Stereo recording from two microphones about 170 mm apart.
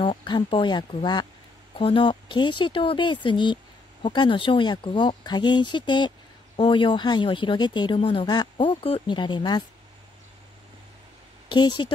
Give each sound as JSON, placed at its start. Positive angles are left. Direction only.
{"t": 0.0, "sound": "speech", "side_deg": 30}
{"t": 11.4, "sound": "speech", "side_deg": 25}